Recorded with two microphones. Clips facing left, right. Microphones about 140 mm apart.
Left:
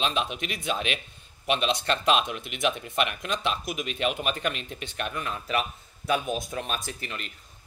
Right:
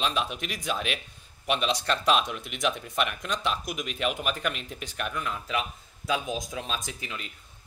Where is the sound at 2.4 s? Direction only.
60° left (ahead or behind).